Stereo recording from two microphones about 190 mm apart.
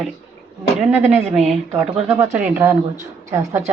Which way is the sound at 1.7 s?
10° right (ahead or behind).